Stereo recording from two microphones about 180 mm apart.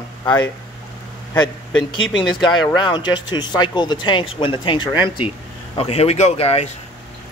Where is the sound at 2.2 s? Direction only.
25° left (ahead or behind).